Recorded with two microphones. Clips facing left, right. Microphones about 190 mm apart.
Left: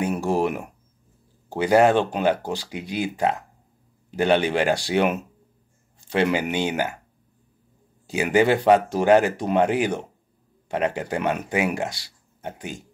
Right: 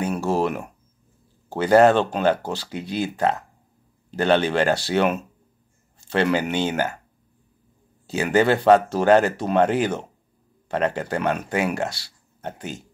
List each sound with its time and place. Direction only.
0.0 s speech: 15° left (ahead or behind)
8.1 s speech: 10° left (ahead or behind)